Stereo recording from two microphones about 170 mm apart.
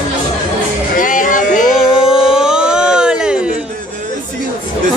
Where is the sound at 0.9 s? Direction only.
50° left (ahead or behind).